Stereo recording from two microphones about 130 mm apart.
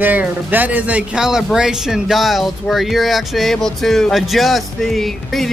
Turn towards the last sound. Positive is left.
turn(degrees=0)  # may be behind; listen again after turning